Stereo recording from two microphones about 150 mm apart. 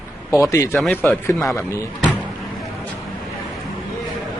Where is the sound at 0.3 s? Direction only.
20° left (ahead or behind).